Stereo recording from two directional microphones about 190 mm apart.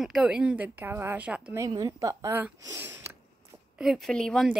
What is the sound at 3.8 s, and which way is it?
Speech, centre (ahead or behind).